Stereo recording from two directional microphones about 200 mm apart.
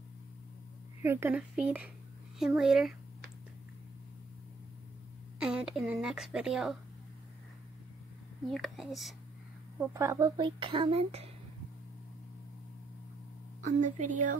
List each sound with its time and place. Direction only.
1.0 s speech: 10° right (ahead or behind)
5.4 s speech: 5° right (ahead or behind)
8.5 s speech: centre (ahead or behind)
9.8 s a child's voice: 15° right (ahead or behind); by 11.2 s 30° right (ahead or behind)
13.7 s a woman's voice: 35° right (ahead or behind)